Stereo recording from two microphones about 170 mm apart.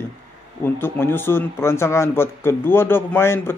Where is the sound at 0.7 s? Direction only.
15° left (ahead or behind).